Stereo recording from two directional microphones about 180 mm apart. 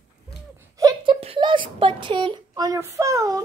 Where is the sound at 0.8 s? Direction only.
25° right (ahead or behind).